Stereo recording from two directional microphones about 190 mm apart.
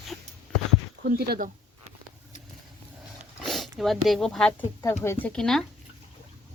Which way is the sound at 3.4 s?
Centre (ahead or behind).